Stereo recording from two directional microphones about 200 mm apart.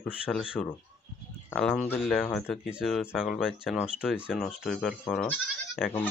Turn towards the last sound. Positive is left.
turn(degrees=0)  # may be behind; listen again after turning